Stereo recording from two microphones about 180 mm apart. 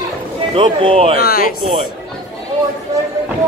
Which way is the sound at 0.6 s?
30° right (ahead or behind).